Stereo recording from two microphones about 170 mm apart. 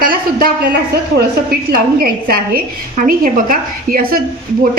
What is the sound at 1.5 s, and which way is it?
A woman's voice, 60° right (ahead or behind).